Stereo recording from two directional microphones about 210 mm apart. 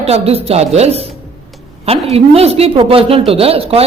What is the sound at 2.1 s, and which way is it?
A woman's voice, 30° right (ahead or behind).